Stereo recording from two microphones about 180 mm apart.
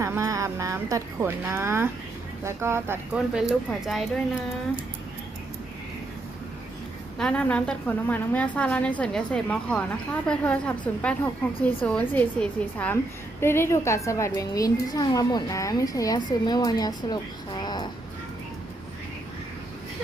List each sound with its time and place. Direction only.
0.0 s speech: 15° right (ahead or behind); by 4.0 s centre (ahead or behind)
7.2 s a woman's voice: 5° left (ahead or behind); by 17.8 s 25° left (ahead or behind)